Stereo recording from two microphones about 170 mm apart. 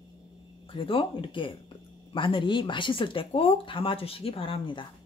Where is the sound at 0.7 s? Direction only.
30° left (ahead or behind).